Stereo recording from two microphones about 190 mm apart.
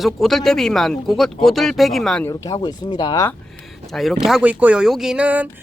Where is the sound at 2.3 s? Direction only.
20° left (ahead or behind).